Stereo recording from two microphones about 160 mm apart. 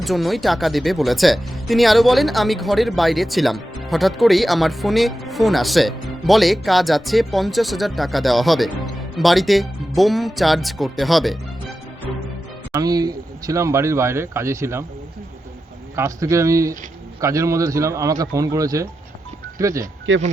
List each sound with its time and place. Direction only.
0.0 s speech: centre (ahead or behind)
12.7 s speech: 25° right (ahead or behind)
16.0 s speech: 20° right (ahead or behind)